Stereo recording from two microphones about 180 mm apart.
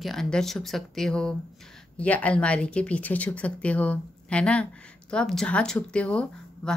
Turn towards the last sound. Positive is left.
turn(degrees=5)  # may be behind; listen again after turning